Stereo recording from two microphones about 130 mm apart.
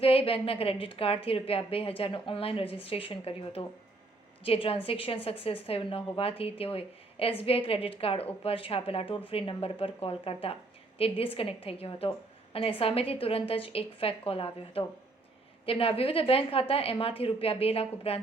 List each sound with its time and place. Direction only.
0.0 s a woman's voice: 45° left (ahead or behind)